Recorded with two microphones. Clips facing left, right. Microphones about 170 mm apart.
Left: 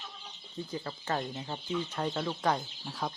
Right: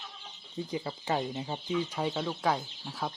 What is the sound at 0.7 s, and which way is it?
Speech, 10° right (ahead or behind).